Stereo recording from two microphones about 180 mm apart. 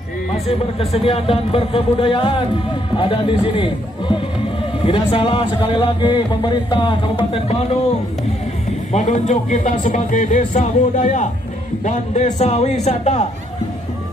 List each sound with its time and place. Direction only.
0.5 s a man's voice: 35° left (ahead or behind)
4.8 s a man's voice: 30° left (ahead or behind)
8.9 s speech: 40° left (ahead or behind)